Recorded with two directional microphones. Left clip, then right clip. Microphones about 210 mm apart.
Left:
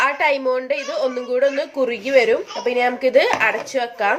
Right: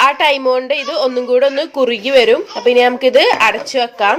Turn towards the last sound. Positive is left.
turn(degrees=-30)  # may be behind; listen again after turning